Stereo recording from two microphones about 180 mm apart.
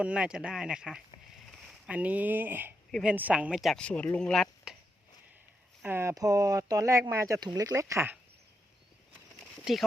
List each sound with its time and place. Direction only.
0.0 s speech: 5° right (ahead or behind)
5.8 s speech: 15° right (ahead or behind)
9.7 s speech: 5° right (ahead or behind)